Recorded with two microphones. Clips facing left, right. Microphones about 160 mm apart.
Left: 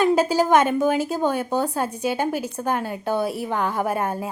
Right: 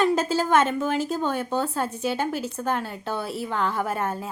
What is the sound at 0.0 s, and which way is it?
A woman's voice, 10° left (ahead or behind).